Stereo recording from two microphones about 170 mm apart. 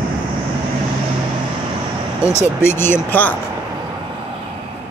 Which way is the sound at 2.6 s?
15° left (ahead or behind).